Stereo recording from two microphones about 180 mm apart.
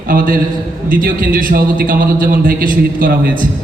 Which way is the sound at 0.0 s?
50° right (ahead or behind).